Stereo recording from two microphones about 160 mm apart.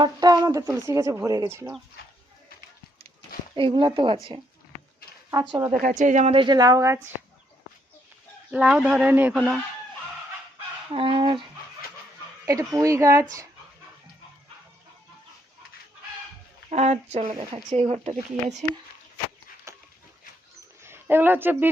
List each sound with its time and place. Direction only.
0.0 s speech: 25° right (ahead or behind)
3.5 s speech: 30° right (ahead or behind)
5.3 s speech: 25° right (ahead or behind)
5.7 s speech: 50° right (ahead or behind)
6.3 s speech: 30° right (ahead or behind)
8.4 s a man's voice: 5° right (ahead or behind)
10.9 s speech: 35° right (ahead or behind)
12.5 s speech: 20° right (ahead or behind)
16.6 s speech: 45° right (ahead or behind)
17.5 s speech: 35° right (ahead or behind)
19.7 s dog: 15° right (ahead or behind)
20.8 s speech: 15° right (ahead or behind)